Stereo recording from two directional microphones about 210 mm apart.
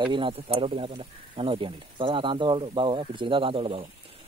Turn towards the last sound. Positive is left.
turn(degrees=-25)  # may be behind; listen again after turning